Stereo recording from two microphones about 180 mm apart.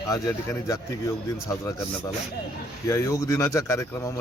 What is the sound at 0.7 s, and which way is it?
Speech, 20° left (ahead or behind).